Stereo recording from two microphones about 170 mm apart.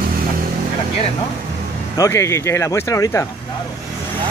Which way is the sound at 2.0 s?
20° left (ahead or behind).